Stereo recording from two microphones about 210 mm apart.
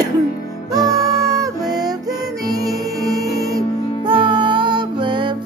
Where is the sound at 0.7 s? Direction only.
15° right (ahead or behind).